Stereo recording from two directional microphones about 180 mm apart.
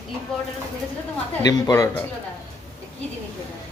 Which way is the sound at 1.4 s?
20° left (ahead or behind).